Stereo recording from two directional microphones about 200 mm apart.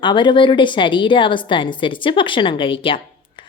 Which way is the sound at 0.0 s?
25° left (ahead or behind).